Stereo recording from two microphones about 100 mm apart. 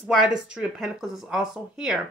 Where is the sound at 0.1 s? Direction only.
5° right (ahead or behind).